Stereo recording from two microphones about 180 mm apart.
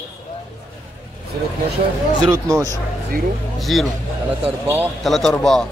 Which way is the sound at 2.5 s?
20° right (ahead or behind).